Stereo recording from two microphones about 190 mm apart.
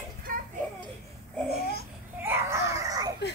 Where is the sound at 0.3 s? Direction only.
45° right (ahead or behind).